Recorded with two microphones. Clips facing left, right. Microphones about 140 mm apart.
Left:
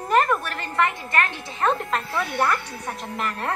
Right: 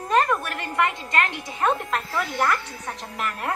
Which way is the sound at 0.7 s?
20° right (ahead or behind).